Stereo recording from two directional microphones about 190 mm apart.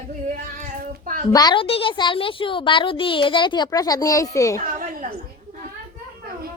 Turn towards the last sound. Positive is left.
turn(degrees=-45)  # may be behind; listen again after turning